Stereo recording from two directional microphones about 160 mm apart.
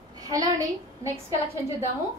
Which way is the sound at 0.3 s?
20° right (ahead or behind).